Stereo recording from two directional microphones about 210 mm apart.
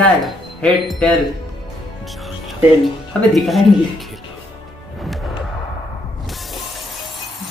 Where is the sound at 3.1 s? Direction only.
Centre (ahead or behind).